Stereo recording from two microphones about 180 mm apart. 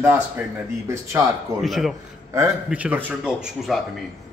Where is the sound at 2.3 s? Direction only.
10° right (ahead or behind).